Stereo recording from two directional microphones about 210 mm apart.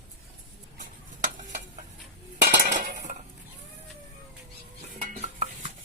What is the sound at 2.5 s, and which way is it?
Cutlery, 40° right (ahead or behind).